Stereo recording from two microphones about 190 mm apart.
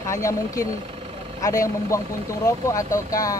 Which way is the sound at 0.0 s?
15° left (ahead or behind).